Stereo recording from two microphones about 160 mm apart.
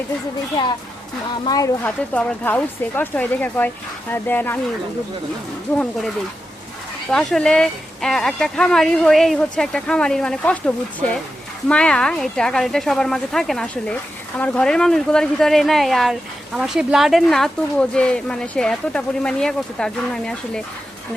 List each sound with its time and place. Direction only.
1.5 s speech: 25° left (ahead or behind)
1.8 s speech: 10° left (ahead or behind)
5.7 s speech: 5° left (ahead or behind)
7.1 s speech: 5° left (ahead or behind)
11.7 s speech: 5° left (ahead or behind)